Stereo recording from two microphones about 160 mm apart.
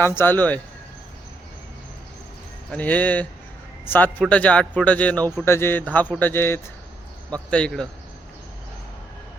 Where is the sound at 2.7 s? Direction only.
10° left (ahead or behind).